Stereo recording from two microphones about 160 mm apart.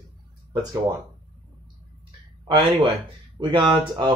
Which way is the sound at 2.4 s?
35° right (ahead or behind).